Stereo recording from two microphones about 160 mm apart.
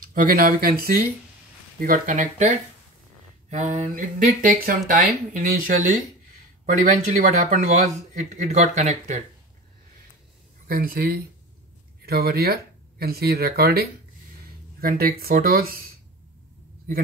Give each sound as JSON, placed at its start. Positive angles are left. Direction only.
{"t": 0.0, "sound": "speech", "side_deg": -60}
{"t": 1.8, "sound": "speech", "side_deg": -55}
{"t": 10.7, "sound": "speech", "side_deg": -65}